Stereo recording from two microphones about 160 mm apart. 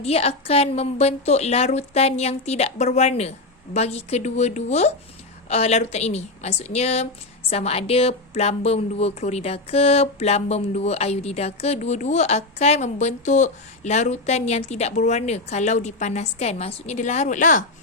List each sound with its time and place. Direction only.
0.0 s a woman's voice: 40° left (ahead or behind)